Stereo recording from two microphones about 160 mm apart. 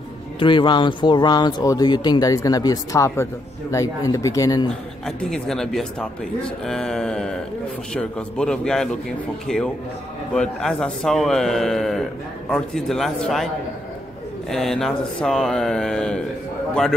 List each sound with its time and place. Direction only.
0.4 s speech: 30° left (ahead or behind)
4.6 s a man's voice: 5° left (ahead or behind)
14.5 s a man's voice: centre (ahead or behind)